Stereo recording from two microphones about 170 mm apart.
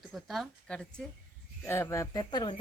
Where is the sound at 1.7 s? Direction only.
15° left (ahead or behind).